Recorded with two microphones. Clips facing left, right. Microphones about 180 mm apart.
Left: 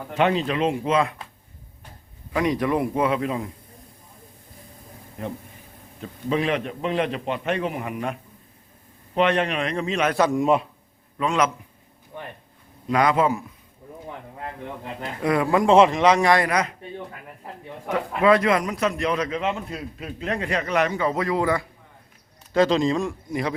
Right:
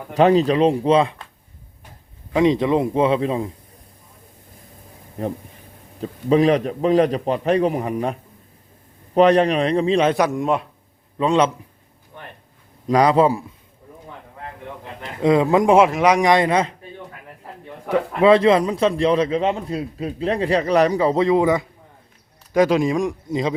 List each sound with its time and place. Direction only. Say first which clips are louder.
0.1 s a man's voice: right 7 dB; 35° right (ahead or behind)
2.3 s a man's voice: right 6 dB; 25° right (ahead or behind)
5.2 s a man's voice: right 6 dB; 35° right (ahead or behind)
10.3 s speech: left 1 dB; centre (ahead or behind)
11.2 s a man's voice: right 5 dB; 30° right (ahead or behind)
12.9 s a man's voice: right 5 dB; 30° right (ahead or behind)
15.2 s a man's voice: right 5 dB; 20° right (ahead or behind)
15.7 s speech: left 1 dB; 5° right (ahead or behind); by 16.7 s 25° right (ahead or behind)
17.8 s a man's voice: right 4 dB; 30° right (ahead or behind)